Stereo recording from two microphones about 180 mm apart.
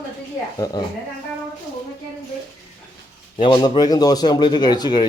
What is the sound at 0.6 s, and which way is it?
Speech, 20° left (ahead or behind).